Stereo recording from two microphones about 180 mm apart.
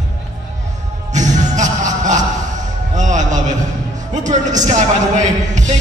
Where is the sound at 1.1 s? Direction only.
40° right (ahead or behind).